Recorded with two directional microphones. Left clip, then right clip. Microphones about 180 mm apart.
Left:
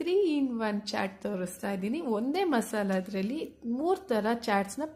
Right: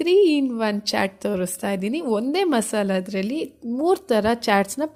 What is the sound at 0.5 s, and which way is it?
A woman's voice, 40° right (ahead or behind).